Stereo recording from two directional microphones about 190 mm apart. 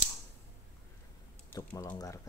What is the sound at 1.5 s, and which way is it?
Speech, 15° left (ahead or behind).